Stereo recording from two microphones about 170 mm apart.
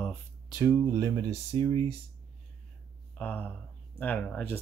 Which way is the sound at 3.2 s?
10° left (ahead or behind).